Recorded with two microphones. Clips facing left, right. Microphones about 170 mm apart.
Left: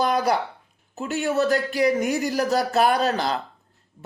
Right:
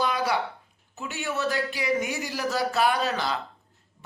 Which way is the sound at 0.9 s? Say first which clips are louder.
Left 8 dB; 40° left (ahead or behind).